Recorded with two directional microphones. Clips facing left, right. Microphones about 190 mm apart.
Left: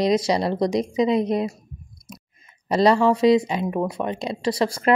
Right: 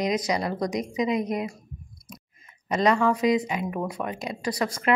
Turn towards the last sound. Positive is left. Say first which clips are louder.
# left 5 dB
turn(degrees=30)  # may be behind; listen again after turning